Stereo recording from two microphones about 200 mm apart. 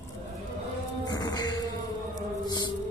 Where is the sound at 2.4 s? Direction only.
20° left (ahead or behind).